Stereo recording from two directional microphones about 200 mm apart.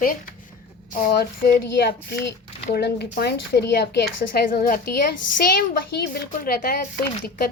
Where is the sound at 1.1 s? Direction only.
55° left (ahead or behind).